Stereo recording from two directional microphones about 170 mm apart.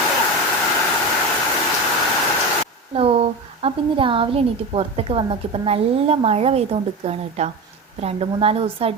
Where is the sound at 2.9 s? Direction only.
35° right (ahead or behind).